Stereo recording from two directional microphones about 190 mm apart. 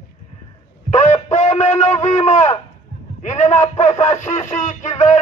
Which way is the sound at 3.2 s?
40° left (ahead or behind).